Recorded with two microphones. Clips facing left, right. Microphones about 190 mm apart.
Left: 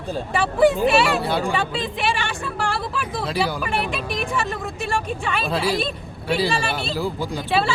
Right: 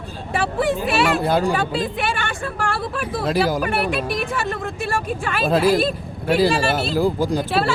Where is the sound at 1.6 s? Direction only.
Centre (ahead or behind).